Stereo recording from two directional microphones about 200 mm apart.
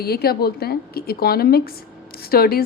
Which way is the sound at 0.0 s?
50° left (ahead or behind).